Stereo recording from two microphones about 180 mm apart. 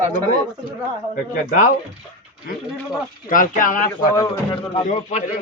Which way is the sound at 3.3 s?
50° left (ahead or behind).